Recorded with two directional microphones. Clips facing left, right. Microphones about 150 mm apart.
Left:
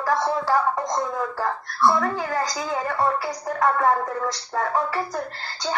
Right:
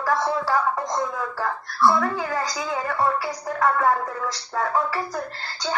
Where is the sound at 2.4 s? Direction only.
40° left (ahead or behind).